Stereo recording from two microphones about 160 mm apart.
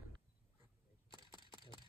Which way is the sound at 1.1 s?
30° left (ahead or behind).